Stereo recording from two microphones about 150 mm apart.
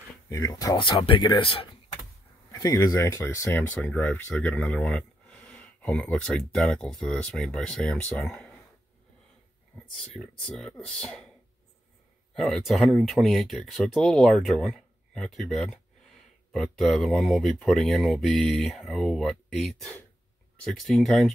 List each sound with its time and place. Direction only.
0.3 s speech: 25° left (ahead or behind)
2.5 s speech: 25° left (ahead or behind)
3.8 s speech: 5° left (ahead or behind)
9.9 s speech: 5° left (ahead or behind)
12.4 s speech: centre (ahead or behind)